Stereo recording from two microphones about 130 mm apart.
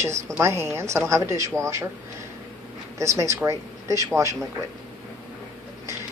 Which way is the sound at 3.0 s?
25° right (ahead or behind).